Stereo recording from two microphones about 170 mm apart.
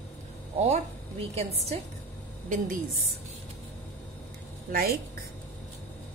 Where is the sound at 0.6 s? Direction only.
40° right (ahead or behind).